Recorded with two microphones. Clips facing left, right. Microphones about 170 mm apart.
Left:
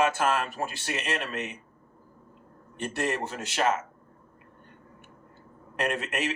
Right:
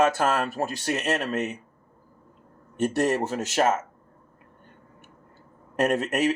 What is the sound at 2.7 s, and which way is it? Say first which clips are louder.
A man's voice: right 7 dB; 40° right (ahead or behind).